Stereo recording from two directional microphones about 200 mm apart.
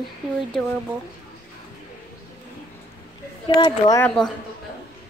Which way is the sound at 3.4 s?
25° left (ahead or behind).